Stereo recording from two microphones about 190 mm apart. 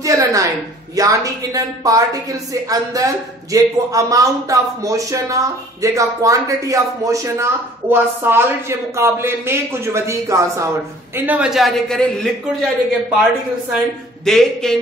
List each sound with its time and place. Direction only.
0.0 s a woman's voice: 15° right (ahead or behind); by 12.6 s 5° left (ahead or behind)
14.2 s a man's voice: centre (ahead or behind)